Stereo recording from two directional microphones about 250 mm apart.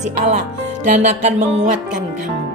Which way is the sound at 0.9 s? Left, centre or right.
Right.